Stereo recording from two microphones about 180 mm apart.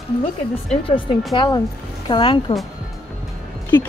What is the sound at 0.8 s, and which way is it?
Speech, 30° left (ahead or behind).